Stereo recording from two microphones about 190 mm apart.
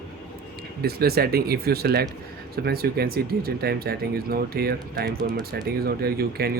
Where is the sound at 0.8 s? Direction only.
55° right (ahead or behind).